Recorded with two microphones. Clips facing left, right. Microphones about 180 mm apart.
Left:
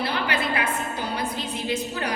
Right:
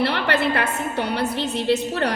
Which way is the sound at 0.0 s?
65° right (ahead or behind).